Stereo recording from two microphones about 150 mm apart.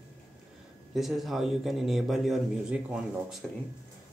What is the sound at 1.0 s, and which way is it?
Speech, centre (ahead or behind).